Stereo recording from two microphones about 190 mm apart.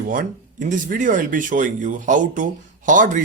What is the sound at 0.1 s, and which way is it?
Speech, 45° right (ahead or behind).